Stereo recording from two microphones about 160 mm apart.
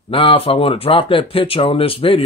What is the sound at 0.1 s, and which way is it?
Speech, 35° left (ahead or behind).